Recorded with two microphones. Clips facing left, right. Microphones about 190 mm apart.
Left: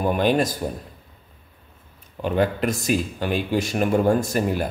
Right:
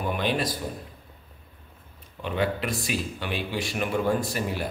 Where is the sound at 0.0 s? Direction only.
45° left (ahead or behind).